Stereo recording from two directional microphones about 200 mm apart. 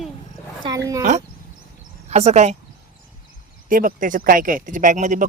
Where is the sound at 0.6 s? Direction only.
15° right (ahead or behind).